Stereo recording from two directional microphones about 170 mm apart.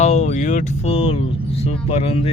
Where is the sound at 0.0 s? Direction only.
40° left (ahead or behind).